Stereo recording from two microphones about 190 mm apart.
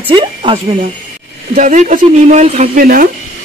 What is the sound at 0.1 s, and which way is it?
Speech, 25° right (ahead or behind).